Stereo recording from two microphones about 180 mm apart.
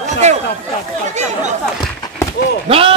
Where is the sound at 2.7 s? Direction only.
30° right (ahead or behind).